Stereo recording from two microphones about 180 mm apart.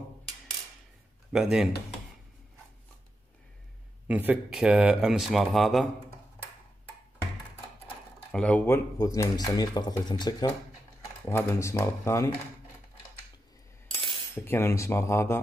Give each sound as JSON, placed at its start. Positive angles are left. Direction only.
{"t": 1.3, "sound": "speech", "side_deg": -5}
{"t": 4.1, "sound": "speech", "side_deg": -10}
{"t": 8.3, "sound": "speech", "side_deg": 5}
{"t": 11.2, "sound": "speech", "side_deg": 15}
{"t": 14.3, "sound": "speech", "side_deg": 10}